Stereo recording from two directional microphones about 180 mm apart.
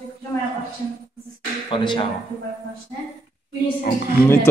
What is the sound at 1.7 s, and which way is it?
Speech, 30° left (ahead or behind).